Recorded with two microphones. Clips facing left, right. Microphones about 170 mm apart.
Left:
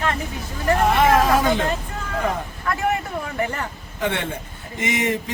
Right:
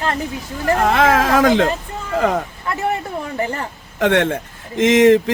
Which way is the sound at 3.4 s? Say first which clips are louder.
Right 2 dB; 30° right (ahead or behind).